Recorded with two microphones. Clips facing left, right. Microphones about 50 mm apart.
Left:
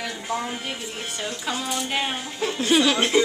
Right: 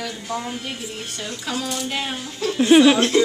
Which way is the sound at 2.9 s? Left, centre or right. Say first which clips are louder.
Right 2 dB; centre.